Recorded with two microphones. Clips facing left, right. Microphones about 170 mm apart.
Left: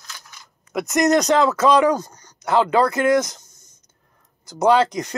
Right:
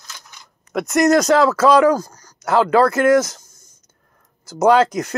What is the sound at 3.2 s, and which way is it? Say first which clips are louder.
Speech: right 3 dB; 5° right (ahead or behind).